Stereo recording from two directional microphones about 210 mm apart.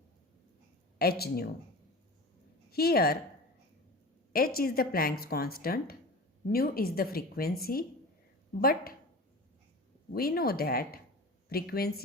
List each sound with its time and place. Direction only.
0.9 s speech: 50° left (ahead or behind)
2.6 s a woman's voice: 45° left (ahead or behind)
4.3 s speech: 45° left (ahead or behind)
10.2 s speech: 45° left (ahead or behind)